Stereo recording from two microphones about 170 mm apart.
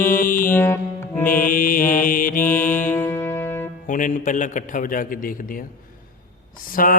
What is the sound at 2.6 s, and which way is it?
Music, 10° left (ahead or behind).